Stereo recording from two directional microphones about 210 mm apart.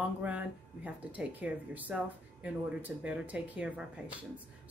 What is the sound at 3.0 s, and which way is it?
A woman's voice, 5° right (ahead or behind).